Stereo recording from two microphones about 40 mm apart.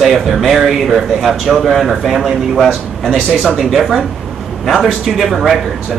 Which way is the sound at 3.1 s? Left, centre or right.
Left.